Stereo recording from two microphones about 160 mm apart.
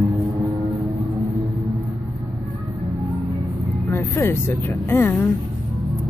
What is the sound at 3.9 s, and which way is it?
Speech, 15° left (ahead or behind).